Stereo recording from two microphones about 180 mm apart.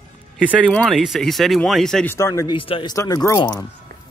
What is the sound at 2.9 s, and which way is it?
Speech, 20° left (ahead or behind).